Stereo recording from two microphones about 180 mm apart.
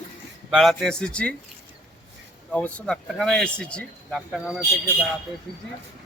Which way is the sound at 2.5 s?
5° left (ahead or behind).